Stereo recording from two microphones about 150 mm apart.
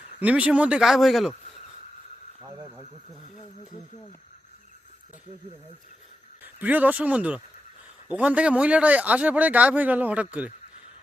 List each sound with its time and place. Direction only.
0.2 s speech: 10° right (ahead or behind)
2.4 s speech: 20° right (ahead or behind)
6.4 s speech: 10° right (ahead or behind)